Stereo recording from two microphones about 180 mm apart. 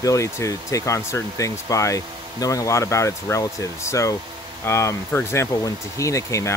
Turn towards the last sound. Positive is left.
turn(degrees=15)  # may be behind; listen again after turning